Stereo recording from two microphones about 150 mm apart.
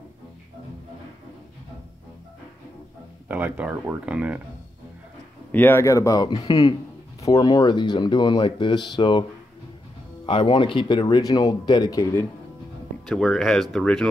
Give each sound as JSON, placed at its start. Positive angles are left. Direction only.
{"t": 3.3, "sound": "speech", "side_deg": -10}
{"t": 5.5, "sound": "speech", "side_deg": 15}
{"t": 10.2, "sound": "speech", "side_deg": 35}
{"t": 13.1, "sound": "speech", "side_deg": 0}